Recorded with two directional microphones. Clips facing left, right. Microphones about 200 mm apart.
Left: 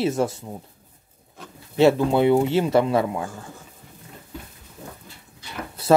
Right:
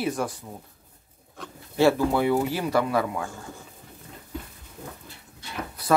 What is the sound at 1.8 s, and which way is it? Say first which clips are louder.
Speech: left 4 dB; 20° left (ahead or behind).